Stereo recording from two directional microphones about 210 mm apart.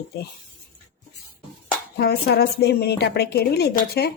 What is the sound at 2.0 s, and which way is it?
A woman's voice, 50° left (ahead or behind).